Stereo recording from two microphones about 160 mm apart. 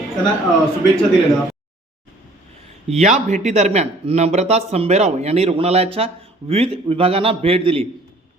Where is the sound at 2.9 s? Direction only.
45° right (ahead or behind).